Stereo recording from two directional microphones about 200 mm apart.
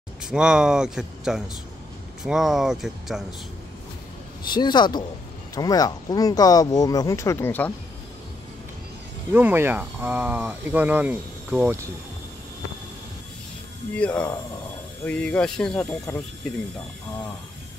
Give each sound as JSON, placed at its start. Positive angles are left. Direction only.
{"t": 0.2, "sound": "speech", "side_deg": -5}
{"t": 4.5, "sound": "speech", "side_deg": 20}
{"t": 9.3, "sound": "speech", "side_deg": -10}
{"t": 13.9, "sound": "speech", "side_deg": 5}